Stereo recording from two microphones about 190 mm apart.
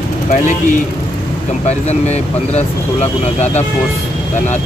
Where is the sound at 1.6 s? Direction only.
35° left (ahead or behind).